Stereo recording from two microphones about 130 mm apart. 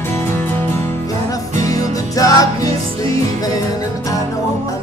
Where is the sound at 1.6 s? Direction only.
25° left (ahead or behind).